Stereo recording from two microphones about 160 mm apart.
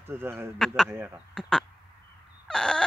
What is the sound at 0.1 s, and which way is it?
Speech, 15° right (ahead or behind).